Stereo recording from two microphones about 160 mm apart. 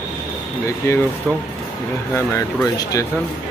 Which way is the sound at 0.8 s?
20° left (ahead or behind).